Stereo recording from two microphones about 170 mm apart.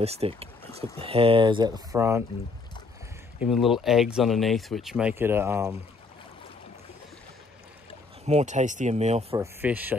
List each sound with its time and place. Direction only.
0.0 s speech: 35° right (ahead or behind); by 2.2 s 15° right (ahead or behind)
3.3 s speech: centre (ahead or behind)
8.3 s speech: 45° right (ahead or behind)
9.3 s speech: 15° right (ahead or behind)